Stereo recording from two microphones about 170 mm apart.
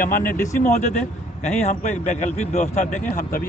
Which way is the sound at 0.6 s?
45° left (ahead or behind).